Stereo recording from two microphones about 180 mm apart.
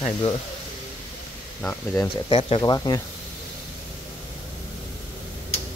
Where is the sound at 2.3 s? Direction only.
30° left (ahead or behind).